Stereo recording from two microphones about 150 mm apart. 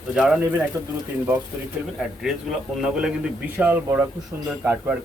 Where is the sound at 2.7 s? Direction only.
5° right (ahead or behind).